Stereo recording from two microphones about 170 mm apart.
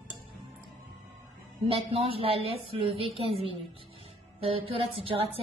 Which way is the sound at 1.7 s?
35° right (ahead or behind).